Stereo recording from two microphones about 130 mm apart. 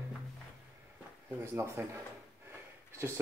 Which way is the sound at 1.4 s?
20° right (ahead or behind).